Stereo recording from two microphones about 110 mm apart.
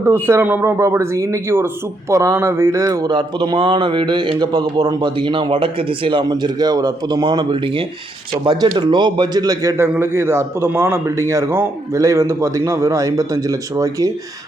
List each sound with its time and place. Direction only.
0.0 s speech: 20° right (ahead or behind); by 9.7 s 35° right (ahead or behind)
9.9 s a man's voice: 20° right (ahead or behind)